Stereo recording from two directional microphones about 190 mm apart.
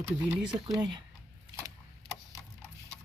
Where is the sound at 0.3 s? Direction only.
5° right (ahead or behind).